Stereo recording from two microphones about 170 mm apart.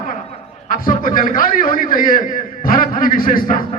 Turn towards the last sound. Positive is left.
turn(degrees=50)  # may be behind; listen again after turning